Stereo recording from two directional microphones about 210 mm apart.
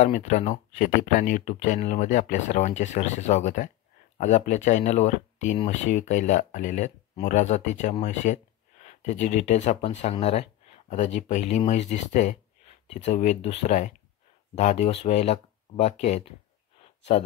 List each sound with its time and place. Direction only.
0.0 s speech: 35° left (ahead or behind)